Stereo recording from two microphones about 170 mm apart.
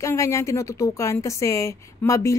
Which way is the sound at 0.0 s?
15° left (ahead or behind).